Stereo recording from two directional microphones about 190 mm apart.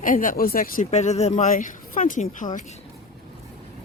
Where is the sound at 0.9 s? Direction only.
35° left (ahead or behind).